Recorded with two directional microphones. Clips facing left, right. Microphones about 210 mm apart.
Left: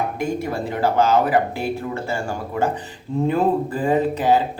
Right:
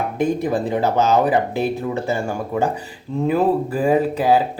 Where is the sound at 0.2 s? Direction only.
15° right (ahead or behind).